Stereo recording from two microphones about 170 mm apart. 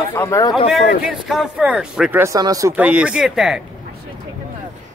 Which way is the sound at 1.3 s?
5° right (ahead or behind).